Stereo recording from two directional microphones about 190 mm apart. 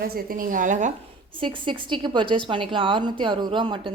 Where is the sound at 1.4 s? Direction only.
25° right (ahead or behind).